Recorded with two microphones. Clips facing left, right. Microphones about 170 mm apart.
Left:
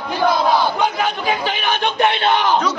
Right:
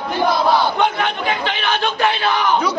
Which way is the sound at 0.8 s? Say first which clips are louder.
Right 1 dB; 5° left (ahead or behind).